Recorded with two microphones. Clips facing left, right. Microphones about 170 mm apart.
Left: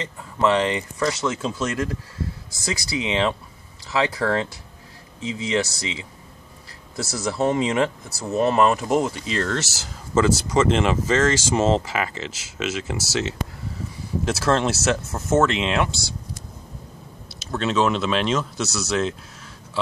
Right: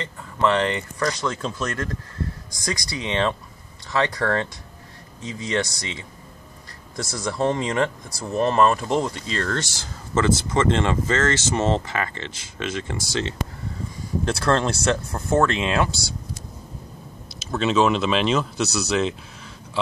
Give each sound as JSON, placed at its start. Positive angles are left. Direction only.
{"t": 0.4, "sound": "speech", "side_deg": 15}
{"t": 5.2, "sound": "speech", "side_deg": 90}
{"t": 5.5, "sound": "speech", "side_deg": 5}
{"t": 7.0, "sound": "speech", "side_deg": 5}
{"t": 17.3, "sound": "speech", "side_deg": 0}